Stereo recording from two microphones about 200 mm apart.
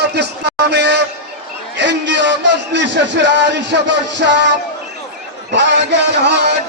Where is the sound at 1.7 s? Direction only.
60° right (ahead or behind).